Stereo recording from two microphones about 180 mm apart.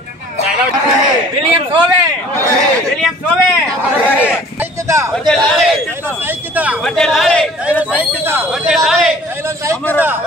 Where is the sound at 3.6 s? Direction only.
10° left (ahead or behind).